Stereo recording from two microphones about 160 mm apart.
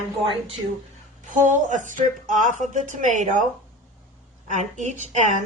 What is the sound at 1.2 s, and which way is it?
A woman's voice, 50° right (ahead or behind).